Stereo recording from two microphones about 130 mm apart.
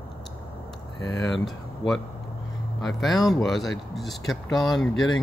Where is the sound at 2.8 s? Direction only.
Centre (ahead or behind).